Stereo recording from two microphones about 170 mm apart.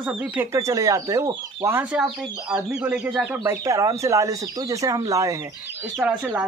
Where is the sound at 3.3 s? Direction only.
15° right (ahead or behind).